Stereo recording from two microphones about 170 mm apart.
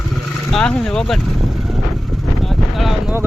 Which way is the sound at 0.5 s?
5° left (ahead or behind).